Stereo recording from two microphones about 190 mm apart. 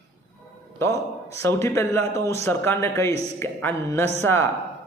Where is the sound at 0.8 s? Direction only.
15° left (ahead or behind).